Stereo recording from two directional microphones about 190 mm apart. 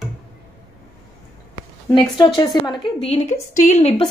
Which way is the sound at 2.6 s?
30° left (ahead or behind).